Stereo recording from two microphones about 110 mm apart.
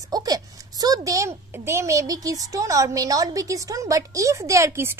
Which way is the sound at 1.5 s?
25° right (ahead or behind).